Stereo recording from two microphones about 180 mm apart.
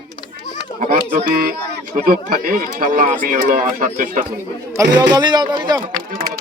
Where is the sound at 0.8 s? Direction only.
50° right (ahead or behind).